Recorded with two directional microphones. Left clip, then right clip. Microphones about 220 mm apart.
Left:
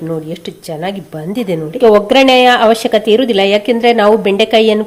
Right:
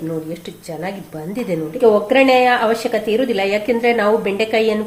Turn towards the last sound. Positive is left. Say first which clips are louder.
# left 7 dB
turn(degrees=35)  # may be behind; listen again after turning